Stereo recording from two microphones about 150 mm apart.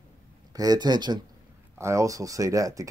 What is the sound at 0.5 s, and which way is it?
Speech, 25° right (ahead or behind).